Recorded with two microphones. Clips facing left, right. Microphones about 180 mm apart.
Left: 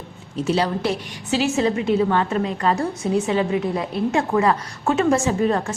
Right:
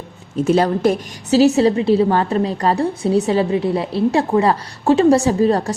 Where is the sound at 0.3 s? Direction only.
50° right (ahead or behind).